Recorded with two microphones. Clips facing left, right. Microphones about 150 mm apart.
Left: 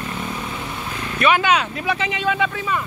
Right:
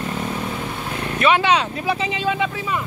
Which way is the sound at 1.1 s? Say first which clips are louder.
Even; 25° right (ahead or behind).